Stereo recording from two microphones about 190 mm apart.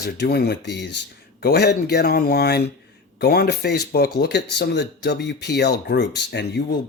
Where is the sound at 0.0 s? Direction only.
55° left (ahead or behind).